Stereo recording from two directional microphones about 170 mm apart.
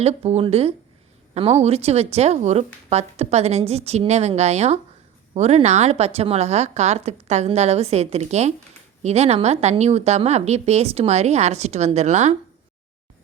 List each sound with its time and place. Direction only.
0.0 s speech: 40° right (ahead or behind)